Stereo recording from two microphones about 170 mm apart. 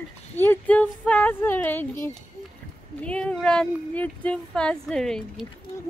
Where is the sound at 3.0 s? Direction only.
5° left (ahead or behind).